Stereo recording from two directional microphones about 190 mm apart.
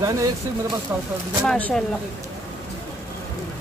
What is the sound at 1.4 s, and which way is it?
Speech, 5° left (ahead or behind).